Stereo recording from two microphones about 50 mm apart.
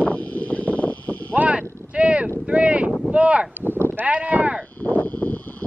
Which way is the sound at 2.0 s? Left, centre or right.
Right.